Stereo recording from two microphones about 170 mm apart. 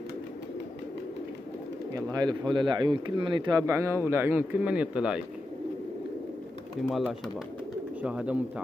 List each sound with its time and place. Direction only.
2.0 s speech: 20° right (ahead or behind); by 5.2 s 5° right (ahead or behind)
8.0 s speech: 5° right (ahead or behind)